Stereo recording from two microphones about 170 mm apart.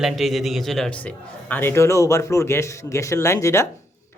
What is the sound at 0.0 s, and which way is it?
Speech, centre (ahead or behind).